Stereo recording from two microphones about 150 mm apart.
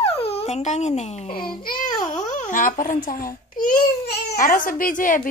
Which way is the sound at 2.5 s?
60° left (ahead or behind).